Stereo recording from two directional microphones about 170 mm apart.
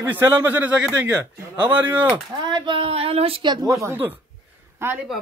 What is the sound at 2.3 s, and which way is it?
Speech, 25° right (ahead or behind).